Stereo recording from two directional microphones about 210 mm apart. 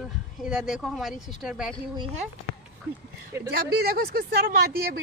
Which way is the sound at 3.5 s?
50° right (ahead or behind).